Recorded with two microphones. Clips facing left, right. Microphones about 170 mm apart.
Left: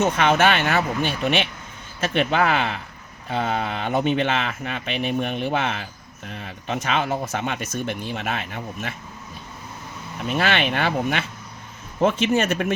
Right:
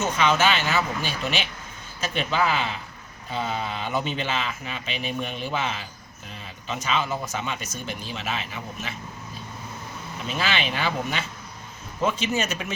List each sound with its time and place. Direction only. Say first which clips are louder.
0.0 s speech: left 4 dB; 55° left (ahead or behind)
10.2 s speech: left 5 dB; 55° left (ahead or behind)